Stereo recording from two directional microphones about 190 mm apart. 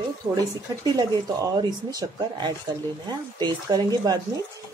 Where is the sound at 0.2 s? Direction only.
20° right (ahead or behind).